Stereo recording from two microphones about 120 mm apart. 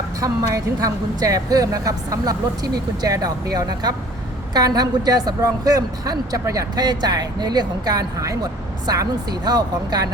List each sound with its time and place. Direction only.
0.2 s a woman's voice: 30° right (ahead or behind)